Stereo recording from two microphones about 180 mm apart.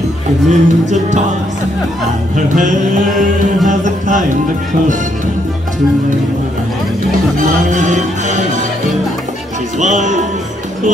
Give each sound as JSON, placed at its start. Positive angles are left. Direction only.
{"t": 0.5, "sound": "music", "side_deg": -40}
{"t": 2.3, "sound": "music", "side_deg": -45}
{"t": 7.7, "sound": "music", "side_deg": -45}
{"t": 9.8, "sound": "music", "side_deg": -40}